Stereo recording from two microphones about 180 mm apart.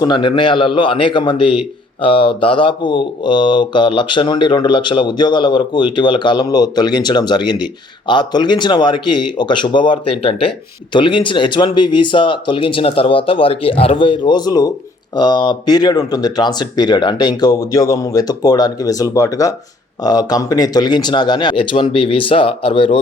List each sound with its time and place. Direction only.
0.0 s a man's voice: 25° left (ahead or behind)